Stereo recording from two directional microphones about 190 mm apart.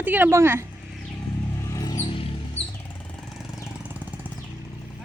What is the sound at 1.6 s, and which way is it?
Mouse, 15° left (ahead or behind).